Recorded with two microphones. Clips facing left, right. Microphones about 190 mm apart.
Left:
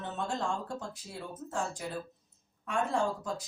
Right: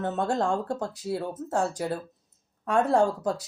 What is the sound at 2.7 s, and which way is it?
Speech, 70° right (ahead or behind).